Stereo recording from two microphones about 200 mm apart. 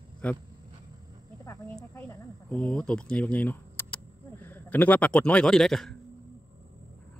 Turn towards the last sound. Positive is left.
turn(degrees=0)  # may be behind; listen again after turning